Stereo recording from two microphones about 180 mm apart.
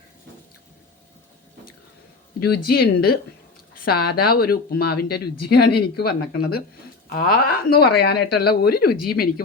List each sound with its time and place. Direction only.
2.6 s speech: 60° left (ahead or behind)